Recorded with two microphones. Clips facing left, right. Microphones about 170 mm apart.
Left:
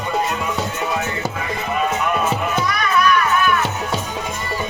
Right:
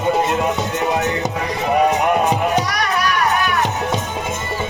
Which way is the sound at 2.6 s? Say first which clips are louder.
Left 2 dB; 40° right (ahead or behind).